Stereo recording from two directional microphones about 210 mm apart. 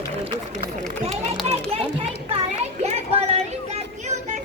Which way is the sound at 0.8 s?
35° right (ahead or behind).